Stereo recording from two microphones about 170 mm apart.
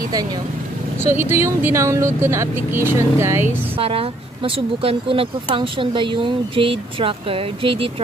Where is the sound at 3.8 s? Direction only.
35° right (ahead or behind).